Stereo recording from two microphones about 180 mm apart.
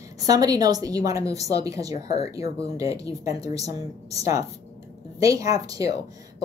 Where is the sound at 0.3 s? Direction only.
20° right (ahead or behind).